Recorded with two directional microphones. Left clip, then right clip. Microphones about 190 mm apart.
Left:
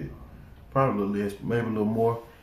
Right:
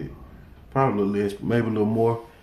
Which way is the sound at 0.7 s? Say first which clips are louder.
Right 3 dB; 20° right (ahead or behind).